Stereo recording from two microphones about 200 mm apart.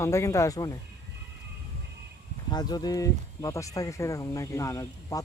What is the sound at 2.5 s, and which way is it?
Speech, 20° left (ahead or behind).